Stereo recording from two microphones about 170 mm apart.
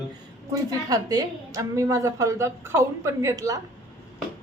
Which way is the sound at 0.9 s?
20° right (ahead or behind).